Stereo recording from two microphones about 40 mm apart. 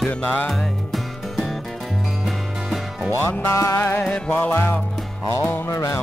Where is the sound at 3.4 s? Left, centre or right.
Left.